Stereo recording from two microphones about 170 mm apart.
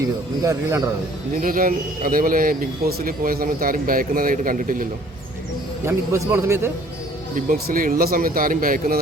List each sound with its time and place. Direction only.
0.0 s speech: 20° right (ahead or behind)
1.4 s a man's voice: 55° right (ahead or behind)
5.8 s a man's voice: 15° right (ahead or behind)
7.3 s a man's voice: 55° right (ahead or behind)